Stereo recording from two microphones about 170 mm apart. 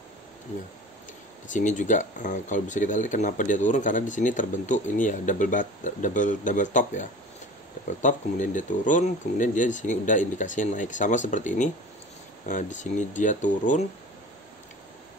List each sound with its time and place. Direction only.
1.5 s speech: 50° left (ahead or behind)